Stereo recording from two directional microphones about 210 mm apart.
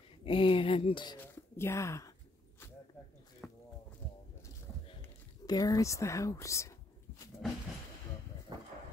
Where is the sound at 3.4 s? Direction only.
5° left (ahead or behind).